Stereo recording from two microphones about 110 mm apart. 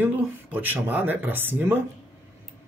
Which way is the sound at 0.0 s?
15° right (ahead or behind).